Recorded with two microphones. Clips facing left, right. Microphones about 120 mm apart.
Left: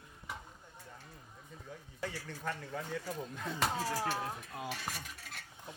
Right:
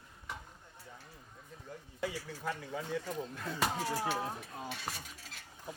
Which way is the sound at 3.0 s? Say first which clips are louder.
Right 1 dB; 5° left (ahead or behind).